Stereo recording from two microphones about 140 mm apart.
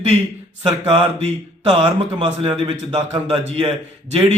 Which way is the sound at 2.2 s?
35° right (ahead or behind).